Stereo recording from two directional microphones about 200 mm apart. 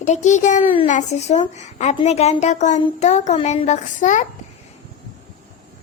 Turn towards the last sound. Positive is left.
turn(degrees=40)  # may be behind; listen again after turning